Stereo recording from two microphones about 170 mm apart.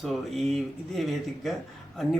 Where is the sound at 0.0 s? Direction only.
Centre (ahead or behind).